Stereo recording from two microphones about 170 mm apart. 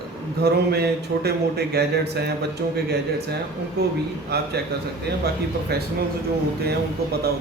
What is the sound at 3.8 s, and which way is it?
Speech, 70° right (ahead or behind).